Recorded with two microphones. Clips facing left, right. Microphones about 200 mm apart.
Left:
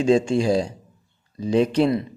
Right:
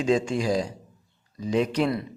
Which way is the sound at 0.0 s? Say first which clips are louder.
Left 5 dB; 30° left (ahead or behind).